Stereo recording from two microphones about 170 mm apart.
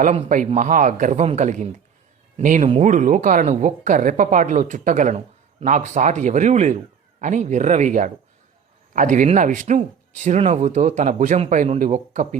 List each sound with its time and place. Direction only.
0.0 s a woman's voice: 45° right (ahead or behind)